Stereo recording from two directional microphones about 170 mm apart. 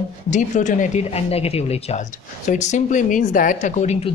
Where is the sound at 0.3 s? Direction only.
45° left (ahead or behind).